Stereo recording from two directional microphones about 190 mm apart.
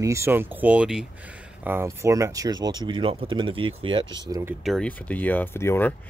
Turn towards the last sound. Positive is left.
turn(degrees=10)  # may be behind; listen again after turning